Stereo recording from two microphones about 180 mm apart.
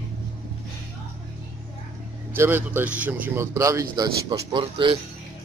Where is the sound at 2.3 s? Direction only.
10° right (ahead or behind); by 5.0 s 30° right (ahead or behind).